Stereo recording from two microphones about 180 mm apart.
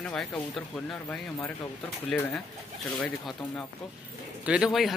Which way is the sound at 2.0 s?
10° left (ahead or behind).